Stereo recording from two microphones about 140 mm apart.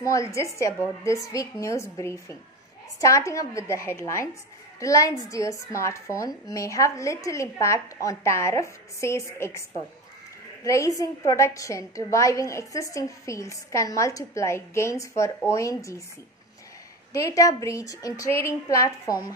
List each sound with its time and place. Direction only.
0.0 s a woman's voice: 20° left (ahead or behind)
17.1 s a woman's voice: 25° left (ahead or behind)